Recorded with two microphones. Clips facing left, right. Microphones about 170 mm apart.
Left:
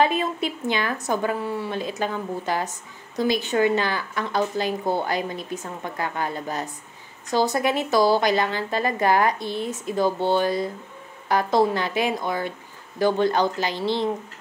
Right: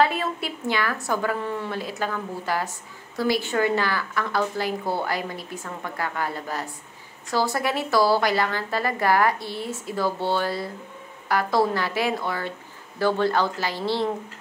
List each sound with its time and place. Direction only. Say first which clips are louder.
0.0 s speech: left 1 dB; 20° left (ahead or behind)